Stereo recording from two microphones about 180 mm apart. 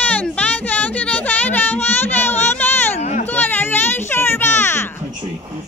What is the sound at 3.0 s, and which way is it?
Children playing, 40° left (ahead or behind).